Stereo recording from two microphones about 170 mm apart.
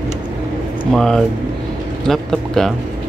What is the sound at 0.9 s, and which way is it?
Speech, centre (ahead or behind).